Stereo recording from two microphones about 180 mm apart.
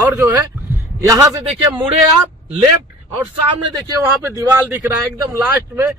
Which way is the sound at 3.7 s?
15° right (ahead or behind).